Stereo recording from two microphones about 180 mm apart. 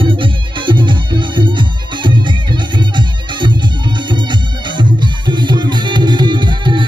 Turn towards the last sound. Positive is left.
turn(degrees=-25)  # may be behind; listen again after turning